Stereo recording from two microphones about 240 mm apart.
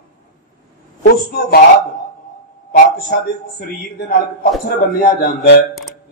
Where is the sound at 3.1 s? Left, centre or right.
Left.